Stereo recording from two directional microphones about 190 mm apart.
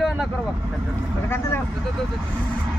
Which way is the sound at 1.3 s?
10° left (ahead or behind).